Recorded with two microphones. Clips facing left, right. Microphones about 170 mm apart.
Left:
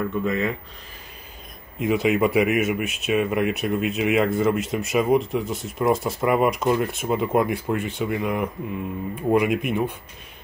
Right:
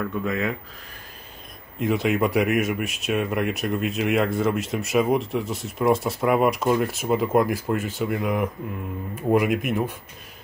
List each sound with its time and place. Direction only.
0.0 s speech: centre (ahead or behind)
1.8 s speech: centre (ahead or behind)